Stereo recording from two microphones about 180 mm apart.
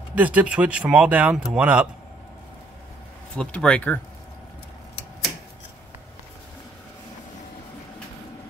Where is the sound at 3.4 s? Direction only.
5° left (ahead or behind).